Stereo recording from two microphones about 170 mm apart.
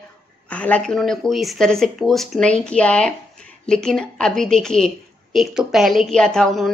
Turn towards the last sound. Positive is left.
turn(degrees=0)  # may be behind; listen again after turning